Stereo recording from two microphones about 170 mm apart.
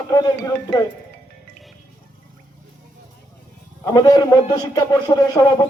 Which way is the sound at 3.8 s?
25° left (ahead or behind).